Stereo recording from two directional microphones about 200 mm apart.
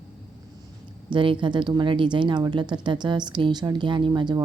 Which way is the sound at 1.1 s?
25° right (ahead or behind).